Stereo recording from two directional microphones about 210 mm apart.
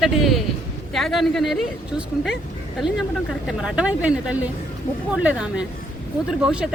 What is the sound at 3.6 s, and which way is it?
Speech, 5° right (ahead or behind).